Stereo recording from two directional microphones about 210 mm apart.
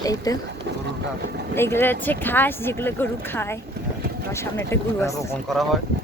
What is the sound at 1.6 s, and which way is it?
Speech, 10° left (ahead or behind).